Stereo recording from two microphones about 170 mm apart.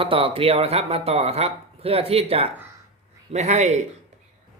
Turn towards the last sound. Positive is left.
turn(degrees=-40)  # may be behind; listen again after turning